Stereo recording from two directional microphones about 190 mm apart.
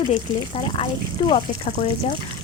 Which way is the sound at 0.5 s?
25° left (ahead or behind).